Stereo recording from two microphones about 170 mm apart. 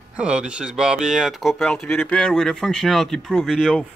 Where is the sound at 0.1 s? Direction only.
5° right (ahead or behind).